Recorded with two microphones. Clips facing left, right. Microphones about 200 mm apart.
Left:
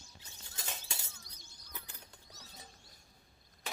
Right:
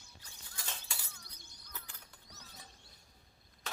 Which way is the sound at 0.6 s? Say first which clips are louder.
Left 1 dB; 20° left (ahead or behind).